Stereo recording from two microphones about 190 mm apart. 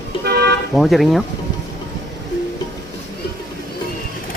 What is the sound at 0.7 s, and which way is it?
Speech, centre (ahead or behind).